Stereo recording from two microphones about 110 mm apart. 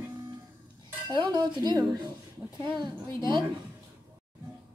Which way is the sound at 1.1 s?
45° right (ahead or behind).